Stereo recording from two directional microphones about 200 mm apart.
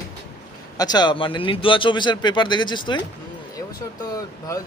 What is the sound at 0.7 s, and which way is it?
A man's voice, 20° left (ahead or behind).